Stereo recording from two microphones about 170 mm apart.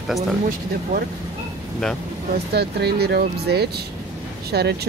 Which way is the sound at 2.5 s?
70° right (ahead or behind).